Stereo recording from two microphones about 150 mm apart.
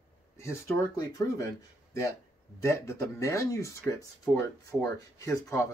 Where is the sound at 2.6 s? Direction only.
20° left (ahead or behind).